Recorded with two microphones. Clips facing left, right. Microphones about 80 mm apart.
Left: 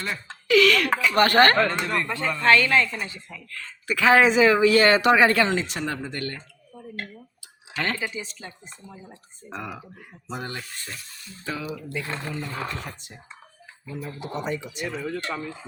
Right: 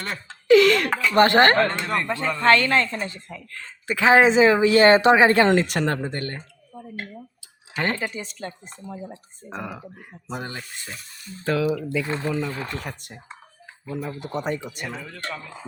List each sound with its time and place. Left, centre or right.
0.4 s a sound: right
0.9 s a sound: centre
1.1 s speech: right
2.4 s a woman's voice: right
3.5 s speech: right
5.5 s speech: right
6.1 s a woman's voice: right
7.9 s speech: right
9.5 s speech: centre
11.4 s speech: right
12.8 s speech: right
14.2 s speech: right